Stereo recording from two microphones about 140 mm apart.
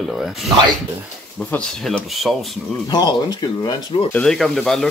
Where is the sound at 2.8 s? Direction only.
30° left (ahead or behind).